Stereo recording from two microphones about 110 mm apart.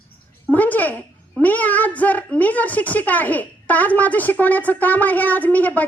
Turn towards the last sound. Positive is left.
turn(degrees=15)  # may be behind; listen again after turning